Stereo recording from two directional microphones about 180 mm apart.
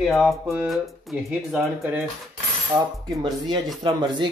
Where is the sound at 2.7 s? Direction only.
25° right (ahead or behind).